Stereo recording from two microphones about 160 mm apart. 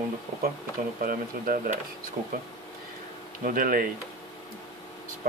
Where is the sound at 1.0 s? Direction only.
60° right (ahead or behind).